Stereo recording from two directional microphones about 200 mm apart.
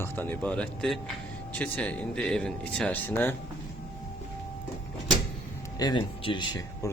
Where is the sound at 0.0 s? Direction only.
10° left (ahead or behind).